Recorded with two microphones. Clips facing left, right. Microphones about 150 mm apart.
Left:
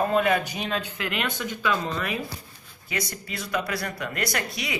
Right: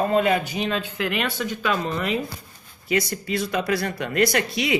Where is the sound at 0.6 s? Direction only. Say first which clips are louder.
Right 3 dB; 10° left (ahead or behind).